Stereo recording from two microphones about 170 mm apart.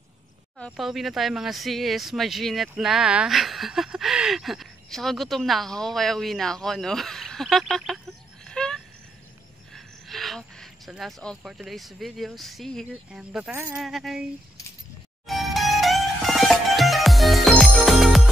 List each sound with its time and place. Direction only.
0.6 s speech: 5° left (ahead or behind)
8.5 s a sound: 5° left (ahead or behind)
9.8 s speech: centre (ahead or behind)
15.2 s music: centre (ahead or behind)